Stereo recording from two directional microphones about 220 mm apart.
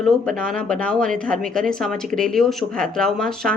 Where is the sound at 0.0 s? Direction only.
Centre (ahead or behind).